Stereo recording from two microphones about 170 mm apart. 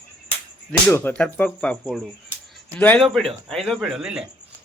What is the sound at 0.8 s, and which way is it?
Speech, 10° left (ahead or behind).